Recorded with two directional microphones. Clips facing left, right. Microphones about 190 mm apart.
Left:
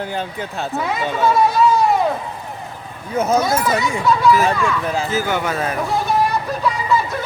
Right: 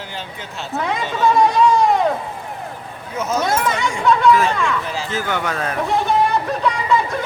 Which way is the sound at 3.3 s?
5° left (ahead or behind).